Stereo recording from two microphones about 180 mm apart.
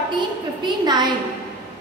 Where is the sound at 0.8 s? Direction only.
25° right (ahead or behind).